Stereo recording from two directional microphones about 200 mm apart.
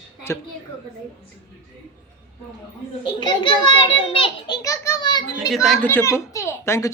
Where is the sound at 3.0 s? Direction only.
25° left (ahead or behind).